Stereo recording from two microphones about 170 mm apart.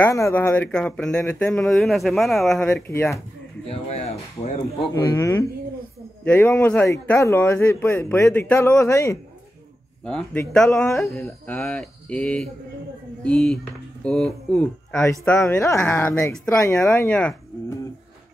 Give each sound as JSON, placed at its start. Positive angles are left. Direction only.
{"t": 0.0, "sound": "speech", "side_deg": 15}
{"t": 2.7, "sound": "a man's voice", "side_deg": 15}
{"t": 3.6, "sound": "speech", "side_deg": 35}
{"t": 5.0, "sound": "a man's voice", "side_deg": 15}
{"t": 15.0, "sound": "a man's voice", "side_deg": 15}